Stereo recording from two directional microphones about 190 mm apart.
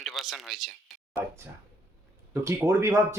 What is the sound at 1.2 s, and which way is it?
Speech, 10° right (ahead or behind).